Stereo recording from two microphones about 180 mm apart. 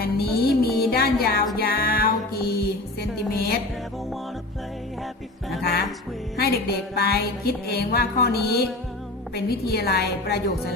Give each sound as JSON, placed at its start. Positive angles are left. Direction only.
{"t": 0.0, "sound": "music", "side_deg": 60}
{"t": 6.3, "sound": "music", "side_deg": 60}